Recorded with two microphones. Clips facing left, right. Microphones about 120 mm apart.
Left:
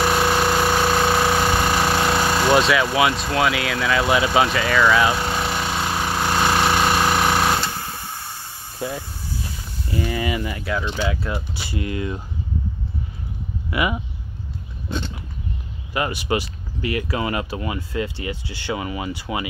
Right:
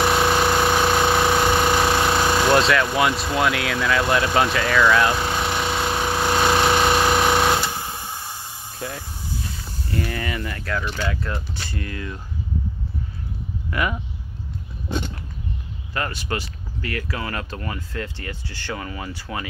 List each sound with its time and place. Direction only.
0.0 s a sound: centre (ahead or behind)
6.7 s jackhammer: centre (ahead or behind)
7.6 s a sound: 20° right (ahead or behind)
8.7 s speech: 10° left (ahead or behind)
13.7 s speech: 10° left (ahead or behind)
15.9 s speech: 15° left (ahead or behind)